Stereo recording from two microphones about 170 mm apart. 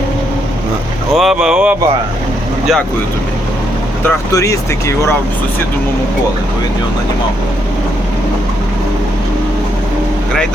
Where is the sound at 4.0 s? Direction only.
20° left (ahead or behind).